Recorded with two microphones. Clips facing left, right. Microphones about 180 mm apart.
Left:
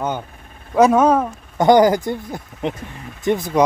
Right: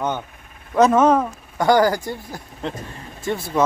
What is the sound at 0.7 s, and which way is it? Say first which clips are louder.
Speech: left 1 dB; 10° left (ahead or behind).